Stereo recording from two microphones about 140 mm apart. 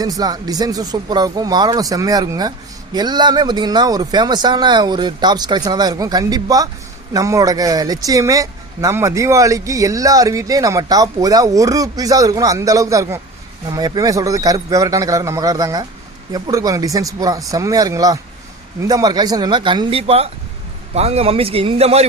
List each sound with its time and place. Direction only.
0.0 s a man's voice: 25° right (ahead or behind); by 22.0 s 45° right (ahead or behind)